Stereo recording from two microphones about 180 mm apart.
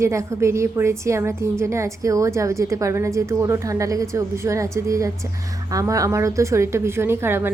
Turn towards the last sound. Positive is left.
turn(degrees=-10)  # may be behind; listen again after turning